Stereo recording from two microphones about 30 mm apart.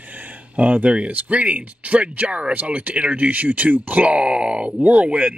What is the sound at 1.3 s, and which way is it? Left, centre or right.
Speech, right.